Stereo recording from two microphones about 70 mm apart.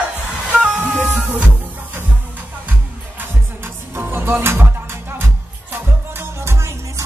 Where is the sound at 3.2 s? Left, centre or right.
Right.